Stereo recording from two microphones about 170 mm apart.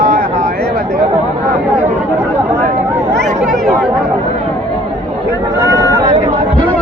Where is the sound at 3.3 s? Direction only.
45° right (ahead or behind).